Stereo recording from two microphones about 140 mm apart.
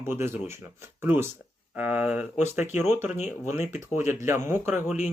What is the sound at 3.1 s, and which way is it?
Speech, 55° left (ahead or behind).